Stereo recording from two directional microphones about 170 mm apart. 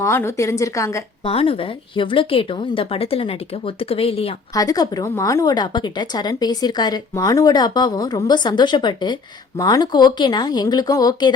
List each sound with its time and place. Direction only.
0.0 s a woman's voice: 15° left (ahead or behind)
1.2 s a woman's voice: 35° left (ahead or behind)
4.5 s a woman's voice: 20° left (ahead or behind)